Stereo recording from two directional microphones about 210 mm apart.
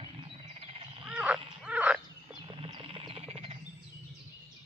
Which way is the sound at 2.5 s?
25° right (ahead or behind).